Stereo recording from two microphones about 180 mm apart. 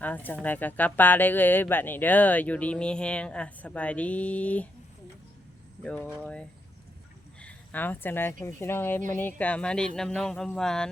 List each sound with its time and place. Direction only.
0.0 s speech: 10° left (ahead or behind)
5.8 s speech: 5° left (ahead or behind)
7.4 s speech: 10° left (ahead or behind)